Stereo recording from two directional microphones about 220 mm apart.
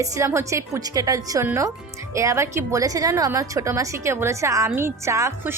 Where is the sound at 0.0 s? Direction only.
15° right (ahead or behind).